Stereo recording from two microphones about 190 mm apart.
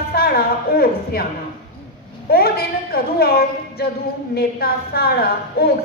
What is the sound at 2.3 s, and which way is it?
A woman's voice, 55° left (ahead or behind).